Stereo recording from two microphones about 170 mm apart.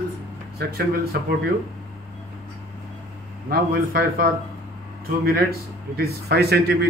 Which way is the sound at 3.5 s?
65° right (ahead or behind).